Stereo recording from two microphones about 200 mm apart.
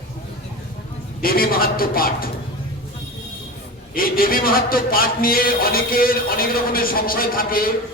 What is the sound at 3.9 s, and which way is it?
A man's voice, 45° left (ahead or behind).